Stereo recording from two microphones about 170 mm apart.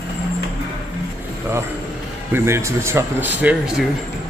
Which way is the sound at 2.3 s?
15° right (ahead or behind).